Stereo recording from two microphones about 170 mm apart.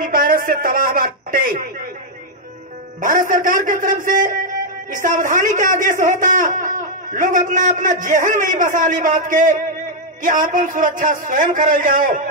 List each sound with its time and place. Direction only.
0.0 s a man's voice: 55° right (ahead or behind)
3.0 s a man's voice: 55° right (ahead or behind)